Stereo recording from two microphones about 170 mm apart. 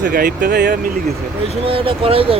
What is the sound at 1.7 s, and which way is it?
Speech, 35° right (ahead or behind).